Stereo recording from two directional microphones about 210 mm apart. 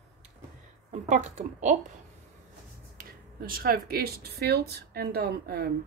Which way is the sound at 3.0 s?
45° right (ahead or behind).